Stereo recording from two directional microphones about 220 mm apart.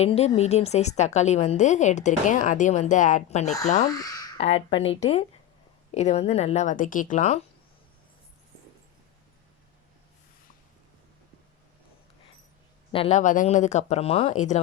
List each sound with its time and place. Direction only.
0.0 s a woman's voice: 30° left (ahead or behind)
3.8 s speech: 15° left (ahead or behind)
4.4 s a woman's voice: 30° left (ahead or behind)
12.9 s a woman's voice: 30° left (ahead or behind)